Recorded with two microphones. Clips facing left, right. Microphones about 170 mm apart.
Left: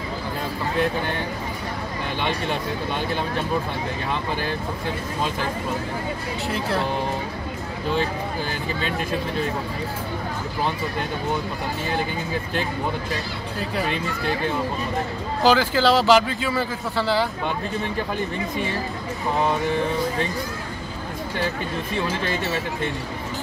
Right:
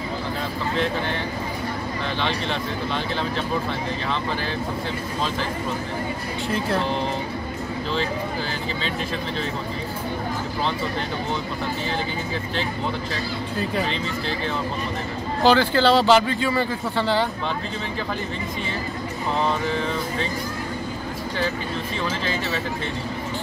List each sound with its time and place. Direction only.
2.1 s speech: 10° left (ahead or behind)
13.8 s speech: 50° left (ahead or behind)
15.4 s speech: 5° left (ahead or behind)